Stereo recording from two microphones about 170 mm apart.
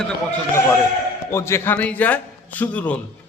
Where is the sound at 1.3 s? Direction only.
15° left (ahead or behind).